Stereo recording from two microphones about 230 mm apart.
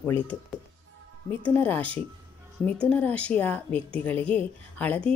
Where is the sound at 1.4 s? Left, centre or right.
Centre.